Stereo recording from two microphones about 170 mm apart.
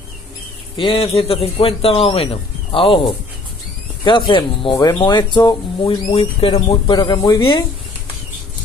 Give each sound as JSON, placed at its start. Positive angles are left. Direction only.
{"t": 0.7, "sound": "a man's voice", "side_deg": 30}
{"t": 4.3, "sound": "speech", "side_deg": 25}
{"t": 6.0, "sound": "speech", "side_deg": 35}